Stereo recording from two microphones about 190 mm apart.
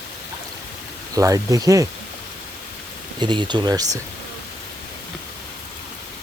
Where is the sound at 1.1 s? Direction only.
15° right (ahead or behind).